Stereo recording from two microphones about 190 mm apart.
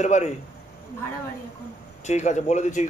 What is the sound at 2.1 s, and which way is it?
Speech, 35° left (ahead or behind).